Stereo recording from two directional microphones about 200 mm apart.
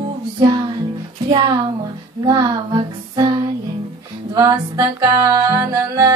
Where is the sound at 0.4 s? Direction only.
25° right (ahead or behind).